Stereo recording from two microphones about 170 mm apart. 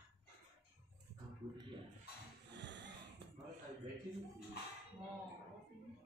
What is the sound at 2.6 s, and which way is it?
Snort, 90° right.